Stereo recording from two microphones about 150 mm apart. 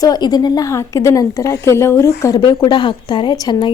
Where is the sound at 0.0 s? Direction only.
25° left (ahead or behind).